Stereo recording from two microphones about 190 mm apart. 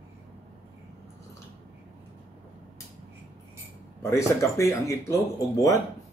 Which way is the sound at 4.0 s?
15° left (ahead or behind).